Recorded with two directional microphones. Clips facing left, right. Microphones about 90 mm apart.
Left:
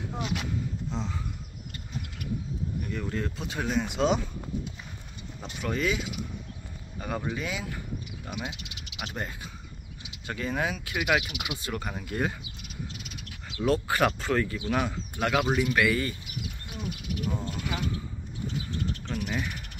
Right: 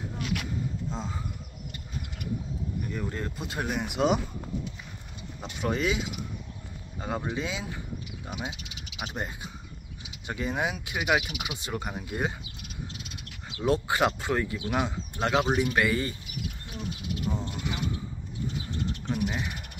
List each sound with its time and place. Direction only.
2.9 s speech: 10° right (ahead or behind)
5.6 s speech: 20° right (ahead or behind)
13.6 s speech: 20° right (ahead or behind)
17.3 s crow: 20° right (ahead or behind)
19.0 s speech: 20° right (ahead or behind)